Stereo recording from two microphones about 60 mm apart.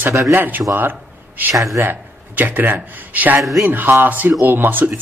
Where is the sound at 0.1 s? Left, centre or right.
Right.